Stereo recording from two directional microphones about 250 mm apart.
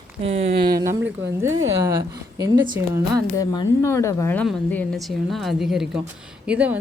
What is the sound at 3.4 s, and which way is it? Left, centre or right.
A woman's voice, centre.